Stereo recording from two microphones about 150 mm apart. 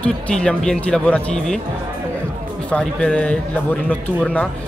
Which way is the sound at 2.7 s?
5° left (ahead or behind).